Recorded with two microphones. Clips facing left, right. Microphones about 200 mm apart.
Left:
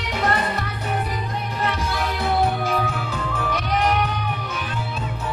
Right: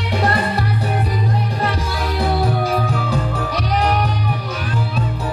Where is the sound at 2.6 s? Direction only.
35° right (ahead or behind).